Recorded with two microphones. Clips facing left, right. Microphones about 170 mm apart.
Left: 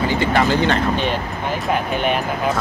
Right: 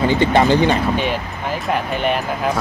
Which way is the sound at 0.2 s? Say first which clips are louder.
Right 3 dB; 20° right (ahead or behind).